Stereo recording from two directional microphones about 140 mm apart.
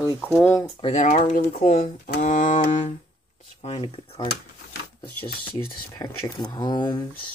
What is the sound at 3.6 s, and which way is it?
Speech, 45° left (ahead or behind).